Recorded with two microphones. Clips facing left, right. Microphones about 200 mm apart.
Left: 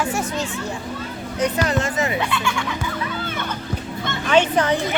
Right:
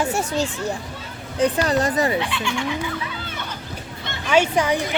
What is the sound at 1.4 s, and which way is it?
Speech, 35° right (ahead or behind).